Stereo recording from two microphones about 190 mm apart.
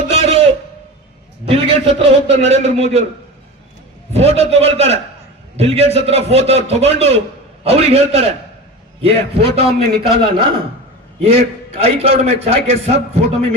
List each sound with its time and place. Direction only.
0.1 s a sound: 35° right (ahead or behind)
1.5 s a man's voice: 30° right (ahead or behind)
4.1 s a man's voice: 35° right (ahead or behind)